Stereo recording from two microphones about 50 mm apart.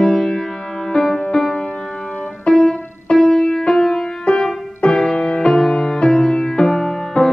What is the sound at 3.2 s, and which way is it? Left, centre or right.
Music, centre.